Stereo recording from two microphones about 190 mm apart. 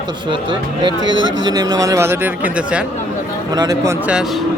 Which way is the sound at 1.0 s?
80° right.